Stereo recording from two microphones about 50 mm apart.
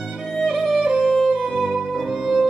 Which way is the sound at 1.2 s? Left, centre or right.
Centre.